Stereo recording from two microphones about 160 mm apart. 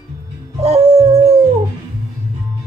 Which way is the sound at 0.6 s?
40° right (ahead or behind).